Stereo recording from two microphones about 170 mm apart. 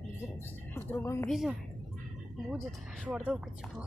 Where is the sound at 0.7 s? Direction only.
15° left (ahead or behind).